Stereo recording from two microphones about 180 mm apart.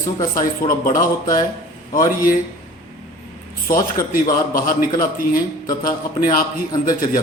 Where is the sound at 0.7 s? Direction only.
50° left (ahead or behind).